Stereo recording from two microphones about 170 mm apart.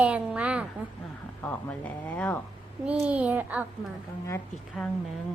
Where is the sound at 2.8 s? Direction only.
5° right (ahead or behind).